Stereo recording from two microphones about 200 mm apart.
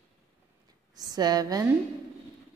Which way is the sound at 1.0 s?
20° right (ahead or behind).